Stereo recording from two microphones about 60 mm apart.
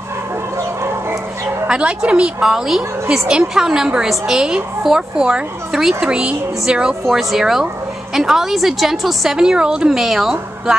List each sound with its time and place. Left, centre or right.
1.7 s speech: centre
2.4 s a woman's voice: centre
3.1 s a woman's voice: centre
7.1 s a woman's voice: centre